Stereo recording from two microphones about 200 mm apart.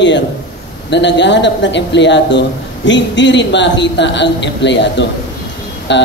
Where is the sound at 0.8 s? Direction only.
60° left (ahead or behind).